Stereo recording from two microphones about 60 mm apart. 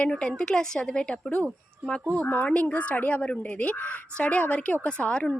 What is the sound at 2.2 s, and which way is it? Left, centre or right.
Speech, left.